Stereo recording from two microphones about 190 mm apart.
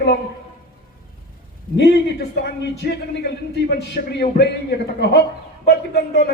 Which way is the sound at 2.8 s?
60° left (ahead or behind).